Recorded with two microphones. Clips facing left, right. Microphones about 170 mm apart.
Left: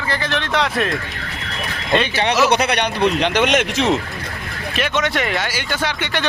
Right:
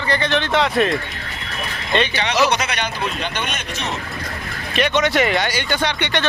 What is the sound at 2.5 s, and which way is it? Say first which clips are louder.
Speech: left 4 dB; 60° left (ahead or behind).